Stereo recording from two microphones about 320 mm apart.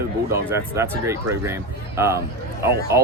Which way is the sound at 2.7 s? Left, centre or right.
Right.